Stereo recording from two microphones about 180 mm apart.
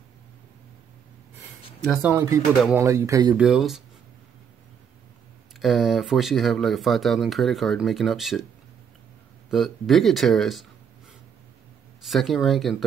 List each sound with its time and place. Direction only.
1.9 s speech: 5° right (ahead or behind)
2.1 s speech: 15° right (ahead or behind)
3.3 s speech: centre (ahead or behind)
5.6 s speech: centre (ahead or behind)
9.5 s speech: centre (ahead or behind)
12.0 s speech: centre (ahead or behind)